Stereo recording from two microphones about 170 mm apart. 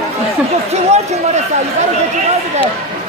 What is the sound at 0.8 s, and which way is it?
Speech, 40° right (ahead or behind).